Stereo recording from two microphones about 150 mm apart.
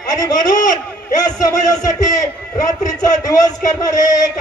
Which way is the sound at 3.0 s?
25° left (ahead or behind).